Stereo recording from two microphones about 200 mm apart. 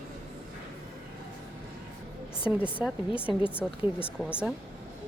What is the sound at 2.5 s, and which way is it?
A woman's voice, 5° right (ahead or behind).